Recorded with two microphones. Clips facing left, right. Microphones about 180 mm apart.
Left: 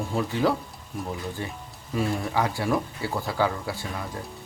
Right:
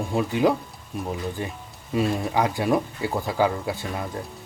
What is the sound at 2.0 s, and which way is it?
Speech, 20° right (ahead or behind).